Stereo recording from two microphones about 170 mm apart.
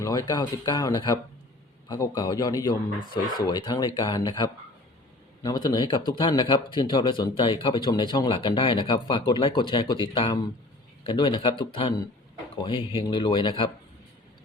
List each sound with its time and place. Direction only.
0.0 s speech: 20° left (ahead or behind)